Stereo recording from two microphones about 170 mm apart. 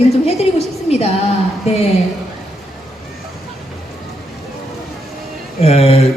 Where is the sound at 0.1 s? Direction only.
40° left (ahead or behind).